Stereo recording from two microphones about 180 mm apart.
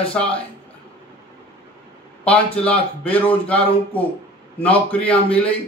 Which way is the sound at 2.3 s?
5° left (ahead or behind).